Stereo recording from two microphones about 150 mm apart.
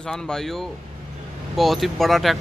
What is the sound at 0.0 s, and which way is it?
A man's voice, 5° left (ahead or behind).